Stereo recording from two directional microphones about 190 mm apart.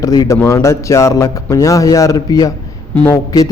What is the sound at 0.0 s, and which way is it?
A man's voice, 20° left (ahead or behind).